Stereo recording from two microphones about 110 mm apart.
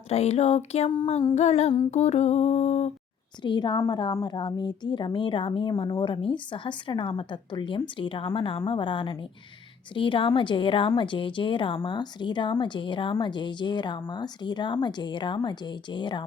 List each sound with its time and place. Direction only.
0.1 s a sound: 75° left (ahead or behind)
1.9 s music: 90° left
3.4 s a woman's voice: 45° left (ahead or behind)